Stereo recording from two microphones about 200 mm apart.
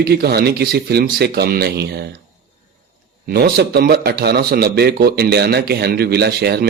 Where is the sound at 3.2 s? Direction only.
50° right (ahead or behind).